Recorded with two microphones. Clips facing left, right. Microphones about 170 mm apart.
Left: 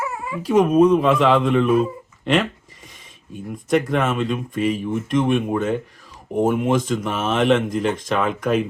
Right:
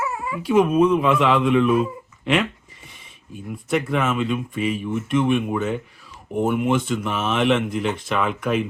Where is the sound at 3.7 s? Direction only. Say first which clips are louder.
Left 2 dB; 40° left (ahead or behind).